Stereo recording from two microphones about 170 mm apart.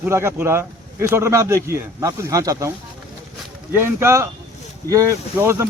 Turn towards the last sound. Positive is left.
turn(degrees=-15)  # may be behind; listen again after turning